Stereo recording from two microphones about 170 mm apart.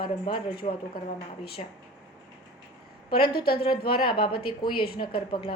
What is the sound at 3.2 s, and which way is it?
Speech, 65° left (ahead or behind).